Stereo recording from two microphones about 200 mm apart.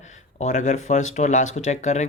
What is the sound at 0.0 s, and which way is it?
Speech, 35° left (ahead or behind).